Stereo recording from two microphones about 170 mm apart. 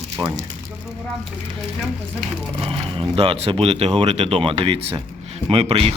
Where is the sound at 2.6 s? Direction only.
30° right (ahead or behind).